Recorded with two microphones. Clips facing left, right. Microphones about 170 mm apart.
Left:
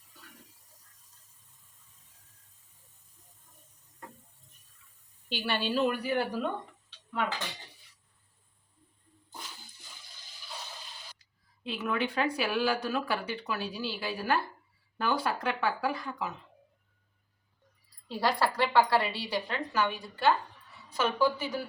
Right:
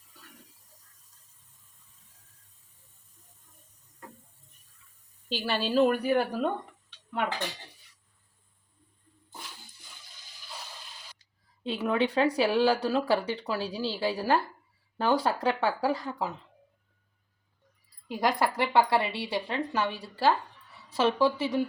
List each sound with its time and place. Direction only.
5.3 s speech: 40° right (ahead or behind)
11.6 s speech: 30° right (ahead or behind)
18.1 s speech: 20° right (ahead or behind)